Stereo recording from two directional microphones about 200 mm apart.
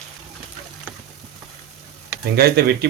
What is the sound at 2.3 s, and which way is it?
Speech, 50° right (ahead or behind).